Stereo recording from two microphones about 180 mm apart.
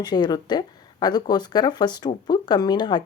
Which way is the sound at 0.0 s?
25° left (ahead or behind).